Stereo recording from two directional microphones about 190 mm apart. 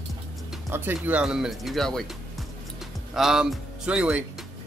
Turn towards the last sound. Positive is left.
turn(degrees=-5)  # may be behind; listen again after turning